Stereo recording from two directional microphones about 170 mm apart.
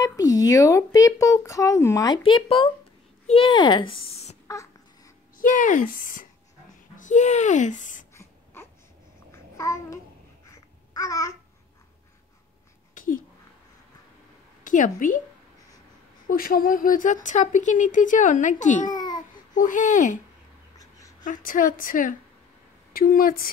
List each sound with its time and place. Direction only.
0.0 s speech: 20° left (ahead or behind); by 4.4 s 35° left (ahead or behind)
4.5 s babbling: 20° left (ahead or behind)
5.4 s a child's voice: 50° left (ahead or behind)
8.1 s a sound: 15° left (ahead or behind)
9.3 s babbling: 15° left (ahead or behind)
12.9 s a sound: 55° left (ahead or behind)
14.6 s a woman's voice: 50° left (ahead or behind)
16.3 s speech: 60° left (ahead or behind)
18.9 s babbling: 25° left (ahead or behind)
19.5 s speech: 50° left (ahead or behind)
20.7 s a sound: 20° left (ahead or behind)
21.2 s speech: 50° left (ahead or behind)